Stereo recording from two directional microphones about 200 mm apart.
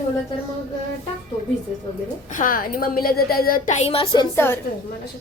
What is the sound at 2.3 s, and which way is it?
A woman's voice, 40° left (ahead or behind).